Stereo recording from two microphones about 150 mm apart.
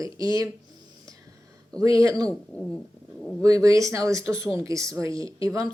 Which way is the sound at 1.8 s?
25° right (ahead or behind).